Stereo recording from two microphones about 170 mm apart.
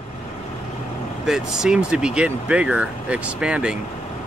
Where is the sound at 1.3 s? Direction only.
5° right (ahead or behind).